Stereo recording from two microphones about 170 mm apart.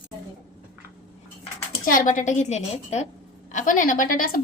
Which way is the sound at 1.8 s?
55° left (ahead or behind).